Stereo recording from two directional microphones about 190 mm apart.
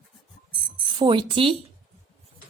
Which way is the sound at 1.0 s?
25° right (ahead or behind).